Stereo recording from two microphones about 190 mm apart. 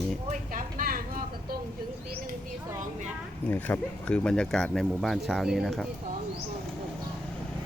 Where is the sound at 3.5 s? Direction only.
10° left (ahead or behind).